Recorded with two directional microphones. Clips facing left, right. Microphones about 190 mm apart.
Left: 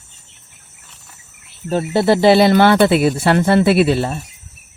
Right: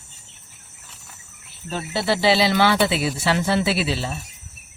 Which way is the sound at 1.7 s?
45° left (ahead or behind).